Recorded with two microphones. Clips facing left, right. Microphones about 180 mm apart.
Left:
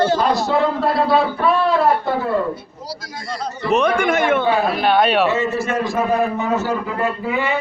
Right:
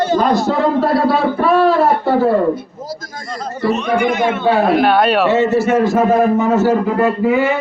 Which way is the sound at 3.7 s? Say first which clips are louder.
Even; 55° left (ahead or behind).